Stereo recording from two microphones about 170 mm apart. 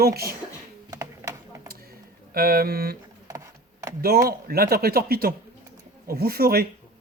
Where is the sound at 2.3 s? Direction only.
60° right (ahead or behind).